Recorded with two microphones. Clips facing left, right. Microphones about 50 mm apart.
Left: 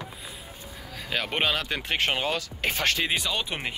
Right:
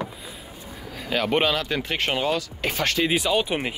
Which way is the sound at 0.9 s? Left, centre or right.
Centre.